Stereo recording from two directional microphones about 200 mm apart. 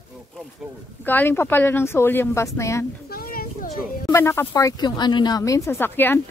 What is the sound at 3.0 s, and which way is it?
Children playing, 45° left (ahead or behind).